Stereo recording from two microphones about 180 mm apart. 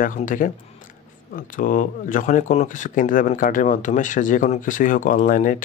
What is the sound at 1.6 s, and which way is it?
Speech, 50° left (ahead or behind).